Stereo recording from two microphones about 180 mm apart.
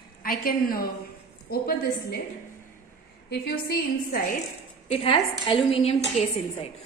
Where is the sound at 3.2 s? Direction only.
60° left (ahead or behind).